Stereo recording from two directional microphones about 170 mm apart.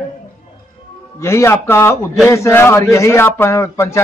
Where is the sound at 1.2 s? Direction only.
15° left (ahead or behind).